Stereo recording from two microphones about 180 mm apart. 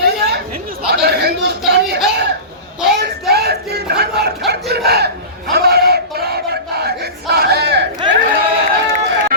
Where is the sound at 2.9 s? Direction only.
65° right (ahead or behind).